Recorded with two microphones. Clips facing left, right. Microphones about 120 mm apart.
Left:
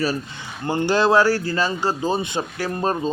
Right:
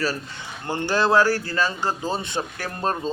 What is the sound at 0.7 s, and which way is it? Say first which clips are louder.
Speech: left 3 dB; 15° left (ahead or behind).